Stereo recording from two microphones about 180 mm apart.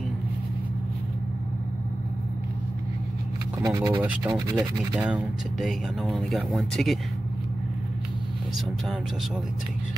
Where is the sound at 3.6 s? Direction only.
20° right (ahead or behind).